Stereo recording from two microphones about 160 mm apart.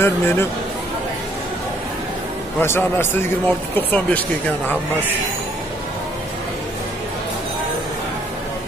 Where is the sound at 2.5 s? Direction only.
15° left (ahead or behind).